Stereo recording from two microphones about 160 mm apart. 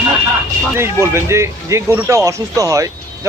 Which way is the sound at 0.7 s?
15° right (ahead or behind).